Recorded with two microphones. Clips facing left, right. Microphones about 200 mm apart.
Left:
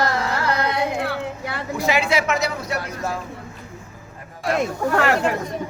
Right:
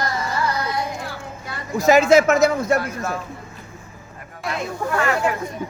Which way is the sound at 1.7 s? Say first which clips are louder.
Right 8 dB; 45° right (ahead or behind).